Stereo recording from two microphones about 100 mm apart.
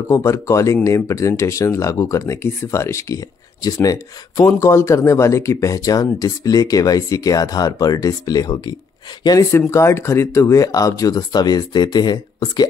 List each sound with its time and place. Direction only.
0.1 s speech: 30° left (ahead or behind)
9.5 s speech: 25° left (ahead or behind); by 12.6 s 45° left (ahead or behind)